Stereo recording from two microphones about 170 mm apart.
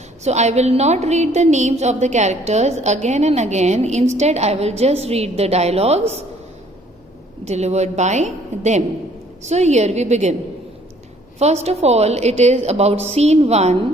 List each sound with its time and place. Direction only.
0.3 s a woman's voice: 40° right (ahead or behind)
7.4 s a woman's voice: 40° right (ahead or behind)
11.3 s a woman's voice: 40° right (ahead or behind)